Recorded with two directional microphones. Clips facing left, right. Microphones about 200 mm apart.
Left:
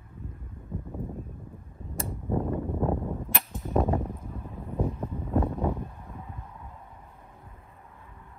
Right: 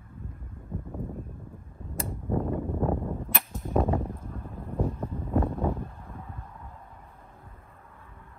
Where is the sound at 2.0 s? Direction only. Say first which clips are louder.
Even; centre (ahead or behind).